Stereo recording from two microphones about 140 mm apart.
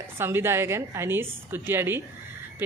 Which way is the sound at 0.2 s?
15° right (ahead or behind).